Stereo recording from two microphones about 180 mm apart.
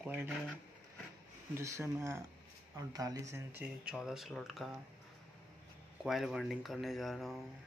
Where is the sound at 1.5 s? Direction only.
15° right (ahead or behind).